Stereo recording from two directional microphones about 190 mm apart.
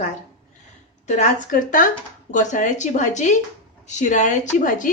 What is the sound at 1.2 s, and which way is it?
A woman's voice, 40° left (ahead or behind).